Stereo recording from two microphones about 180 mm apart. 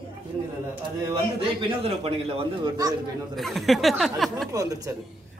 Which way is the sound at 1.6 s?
30° right (ahead or behind).